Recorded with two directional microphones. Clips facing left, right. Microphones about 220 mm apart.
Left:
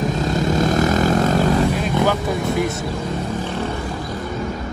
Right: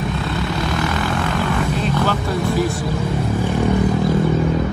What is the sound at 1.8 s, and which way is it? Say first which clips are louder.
Vehicle: left 1 dB; 15° left (ahead or behind).